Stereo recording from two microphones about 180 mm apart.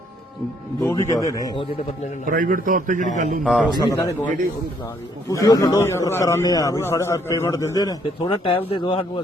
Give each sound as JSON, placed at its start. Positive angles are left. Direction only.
{"t": 0.8, "sound": "a man's voice", "side_deg": 15}
{"t": 2.2, "sound": "a man's voice", "side_deg": -50}
{"t": 3.4, "sound": "a man's voice", "side_deg": 0}
{"t": 3.8, "sound": "a man's voice", "side_deg": 20}
{"t": 5.3, "sound": "a man's voice", "side_deg": 15}